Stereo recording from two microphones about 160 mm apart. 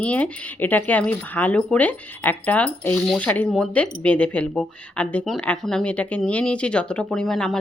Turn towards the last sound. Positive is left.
turn(degrees=5)  # may be behind; listen again after turning